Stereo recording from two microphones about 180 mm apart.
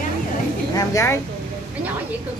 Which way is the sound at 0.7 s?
15° left (ahead or behind).